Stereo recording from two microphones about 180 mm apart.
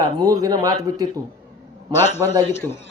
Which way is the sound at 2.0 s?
40° left (ahead or behind).